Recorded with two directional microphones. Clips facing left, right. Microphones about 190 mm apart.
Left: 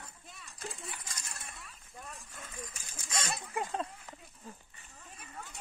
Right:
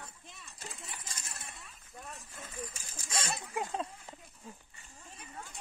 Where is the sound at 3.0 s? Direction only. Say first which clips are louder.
Even; 30° right (ahead or behind).